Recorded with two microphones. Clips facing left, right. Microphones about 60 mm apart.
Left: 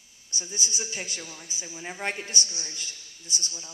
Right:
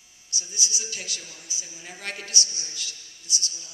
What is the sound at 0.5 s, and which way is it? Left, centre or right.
A woman's voice, left.